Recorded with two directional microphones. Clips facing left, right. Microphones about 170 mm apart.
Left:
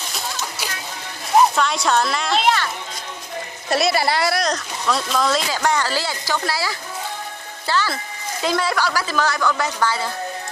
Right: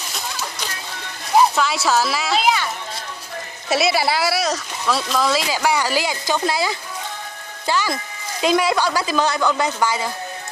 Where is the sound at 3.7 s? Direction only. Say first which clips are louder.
Even; centre (ahead or behind).